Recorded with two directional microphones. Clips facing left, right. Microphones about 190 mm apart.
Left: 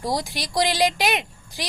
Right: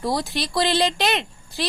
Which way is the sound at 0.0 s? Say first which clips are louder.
Right 2 dB; 15° left (ahead or behind).